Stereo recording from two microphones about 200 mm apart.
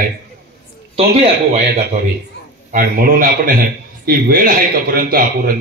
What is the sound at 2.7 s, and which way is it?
A man's voice, 45° right (ahead or behind).